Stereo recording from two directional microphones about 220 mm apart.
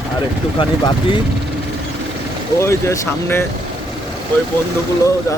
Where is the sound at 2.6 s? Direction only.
10° left (ahead or behind).